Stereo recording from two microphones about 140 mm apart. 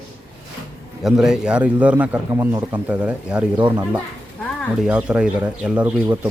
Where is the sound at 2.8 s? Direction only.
10° right (ahead or behind).